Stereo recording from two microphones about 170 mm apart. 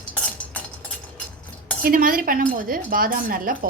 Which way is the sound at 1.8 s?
55° right (ahead or behind).